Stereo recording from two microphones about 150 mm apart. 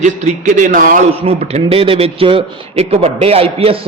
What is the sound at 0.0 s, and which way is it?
A man's voice, 55° right (ahead or behind).